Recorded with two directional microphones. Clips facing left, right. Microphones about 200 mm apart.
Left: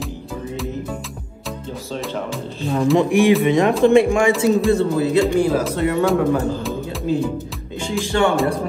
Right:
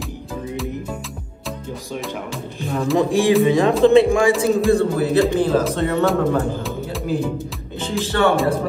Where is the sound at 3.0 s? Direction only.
15° left (ahead or behind).